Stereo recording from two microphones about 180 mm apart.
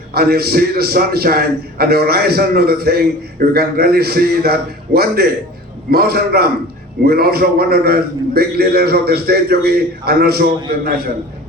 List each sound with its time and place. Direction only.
0.1 s a man's voice: 60° right (ahead or behind)